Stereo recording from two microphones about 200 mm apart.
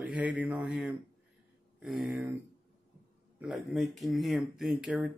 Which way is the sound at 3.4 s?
5° right (ahead or behind).